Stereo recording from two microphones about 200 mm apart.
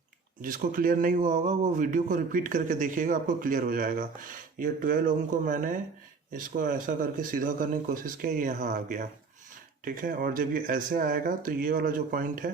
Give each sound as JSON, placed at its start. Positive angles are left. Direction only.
{"t": 0.4, "sound": "a man's voice", "side_deg": -45}